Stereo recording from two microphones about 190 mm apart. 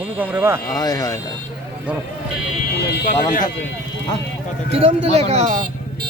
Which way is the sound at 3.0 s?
45° left (ahead or behind).